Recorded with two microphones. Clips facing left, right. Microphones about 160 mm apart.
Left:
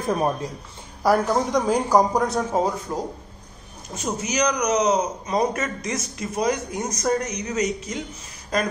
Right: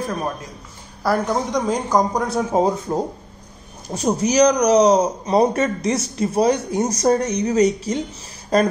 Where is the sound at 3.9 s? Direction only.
35° right (ahead or behind).